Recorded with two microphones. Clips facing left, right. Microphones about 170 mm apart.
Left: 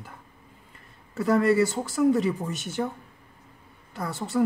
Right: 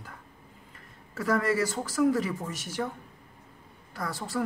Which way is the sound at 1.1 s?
25° left (ahead or behind).